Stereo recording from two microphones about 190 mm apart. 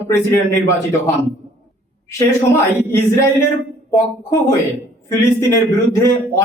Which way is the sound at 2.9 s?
15° left (ahead or behind).